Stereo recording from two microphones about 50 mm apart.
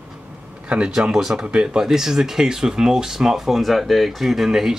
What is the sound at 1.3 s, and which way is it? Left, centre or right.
Speech, right.